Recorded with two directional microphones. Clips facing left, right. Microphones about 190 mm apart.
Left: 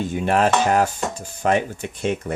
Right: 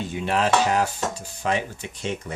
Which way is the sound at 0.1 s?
50° left (ahead or behind).